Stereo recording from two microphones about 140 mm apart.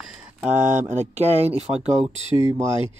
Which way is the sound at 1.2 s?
50° right (ahead or behind).